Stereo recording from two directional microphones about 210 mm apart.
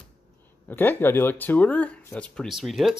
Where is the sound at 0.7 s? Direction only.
10° left (ahead or behind).